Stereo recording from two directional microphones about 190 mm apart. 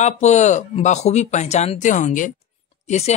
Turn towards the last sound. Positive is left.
turn(degrees=35)  # may be behind; listen again after turning